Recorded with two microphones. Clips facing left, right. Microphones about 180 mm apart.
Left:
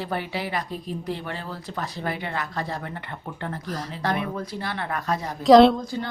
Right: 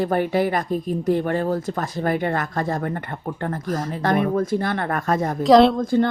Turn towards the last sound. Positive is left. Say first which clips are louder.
# right 12 dB
turn(degrees=-55)  # may be behind; listen again after turning